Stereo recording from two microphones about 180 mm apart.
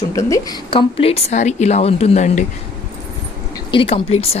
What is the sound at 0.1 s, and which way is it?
Speech, 15° left (ahead or behind).